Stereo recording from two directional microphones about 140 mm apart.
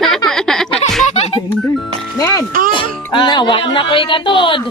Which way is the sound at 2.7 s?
35° left (ahead or behind).